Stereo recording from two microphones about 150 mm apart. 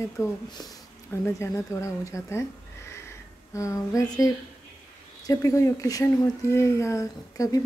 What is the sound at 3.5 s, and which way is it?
Speech, 20° left (ahead or behind).